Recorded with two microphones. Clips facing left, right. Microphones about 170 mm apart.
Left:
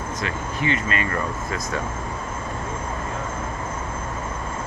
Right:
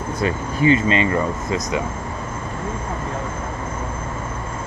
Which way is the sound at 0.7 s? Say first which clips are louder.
Right 7 dB; 25° right (ahead or behind).